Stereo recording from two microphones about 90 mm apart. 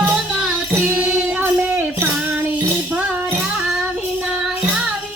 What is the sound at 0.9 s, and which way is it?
Music, 15° right (ahead or behind).